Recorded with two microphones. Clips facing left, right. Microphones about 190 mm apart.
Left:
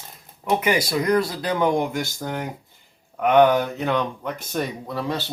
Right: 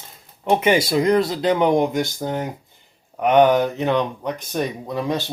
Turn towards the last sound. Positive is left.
turn(degrees=-15)  # may be behind; listen again after turning